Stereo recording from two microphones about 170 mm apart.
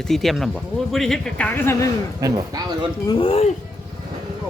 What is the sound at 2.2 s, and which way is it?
Speech, 25° right (ahead or behind).